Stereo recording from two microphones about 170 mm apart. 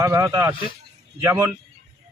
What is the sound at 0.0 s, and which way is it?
A man's voice, 15° right (ahead or behind).